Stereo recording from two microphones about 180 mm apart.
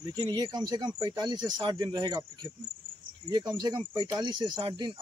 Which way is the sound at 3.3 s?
25° right (ahead or behind).